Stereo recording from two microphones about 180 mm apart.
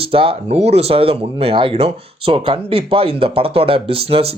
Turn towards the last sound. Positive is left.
turn(degrees=-30)  # may be behind; listen again after turning